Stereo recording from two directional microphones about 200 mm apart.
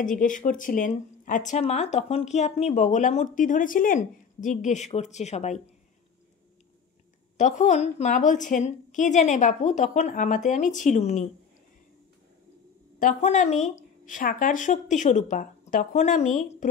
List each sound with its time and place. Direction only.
0.0 s speech: 40° left (ahead or behind)
7.3 s speech: 40° left (ahead or behind)
13.0 s speech: 35° left (ahead or behind)